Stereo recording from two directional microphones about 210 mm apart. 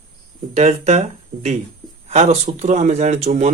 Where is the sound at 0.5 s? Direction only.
30° right (ahead or behind).